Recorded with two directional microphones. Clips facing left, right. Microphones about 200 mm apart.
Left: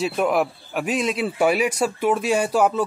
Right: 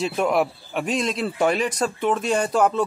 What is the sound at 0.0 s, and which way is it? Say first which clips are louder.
A man's voice: even; centre (ahead or behind).